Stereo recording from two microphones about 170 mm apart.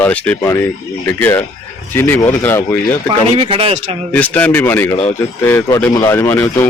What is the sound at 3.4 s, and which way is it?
Speech, 30° right (ahead or behind).